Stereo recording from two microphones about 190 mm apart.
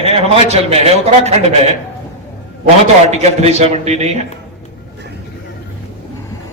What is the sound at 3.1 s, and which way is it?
A man's voice, 35° right (ahead or behind).